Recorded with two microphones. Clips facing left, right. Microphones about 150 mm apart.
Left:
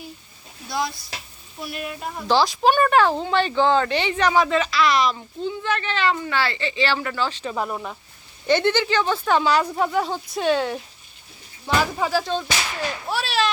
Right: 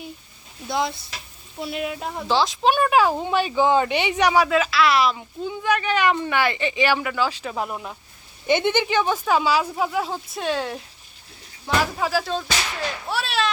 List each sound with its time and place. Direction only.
0.7 s speech: 25° right (ahead or behind)
2.2 s speech: centre (ahead or behind)
8.4 s speech: 15° right (ahead or behind)
13.1 s a sound: centre (ahead or behind)